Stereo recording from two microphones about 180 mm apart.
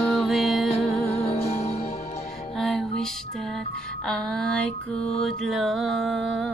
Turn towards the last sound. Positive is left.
turn(degrees=0)  # may be behind; listen again after turning